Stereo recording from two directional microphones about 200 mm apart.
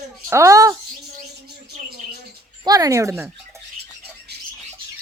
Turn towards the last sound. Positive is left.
turn(degrees=-15)  # may be behind; listen again after turning